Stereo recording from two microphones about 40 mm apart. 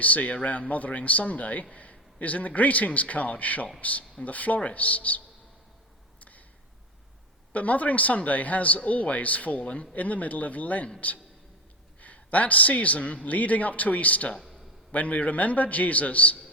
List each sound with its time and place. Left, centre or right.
0.0 s a man's voice: left
6.1 s a sound: left
7.5 s a man's voice: left
11.9 s a man's voice: left